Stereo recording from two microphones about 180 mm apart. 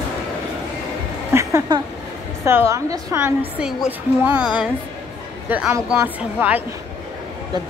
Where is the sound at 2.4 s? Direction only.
15° right (ahead or behind).